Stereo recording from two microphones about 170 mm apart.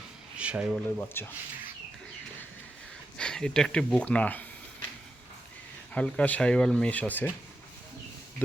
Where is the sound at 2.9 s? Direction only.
5° left (ahead or behind).